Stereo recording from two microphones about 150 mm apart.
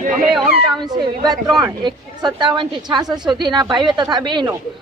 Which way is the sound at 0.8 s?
25° right (ahead or behind).